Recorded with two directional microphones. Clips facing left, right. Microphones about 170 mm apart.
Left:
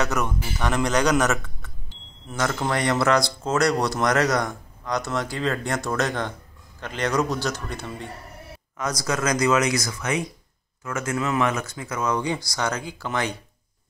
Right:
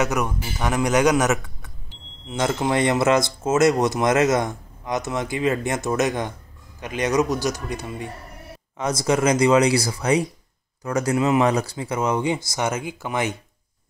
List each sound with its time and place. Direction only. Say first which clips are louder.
0.0 s a man's voice: right 2 dB; 15° right (ahead or behind)
8.7 s speech: right 5 dB; 25° right (ahead or behind)